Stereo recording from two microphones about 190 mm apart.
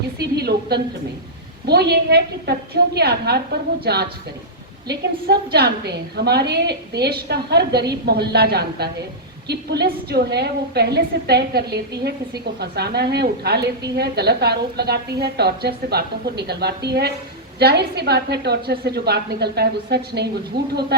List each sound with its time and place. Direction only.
0.2 s a woman's voice: 60° right (ahead or behind)